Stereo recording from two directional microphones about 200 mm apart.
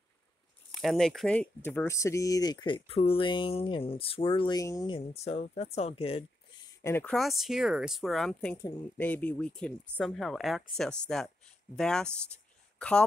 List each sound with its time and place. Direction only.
0.7 s speech: centre (ahead or behind); by 6.2 s 30° left (ahead or behind)
6.8 s speech: 10° left (ahead or behind)
7.2 s speech: centre (ahead or behind)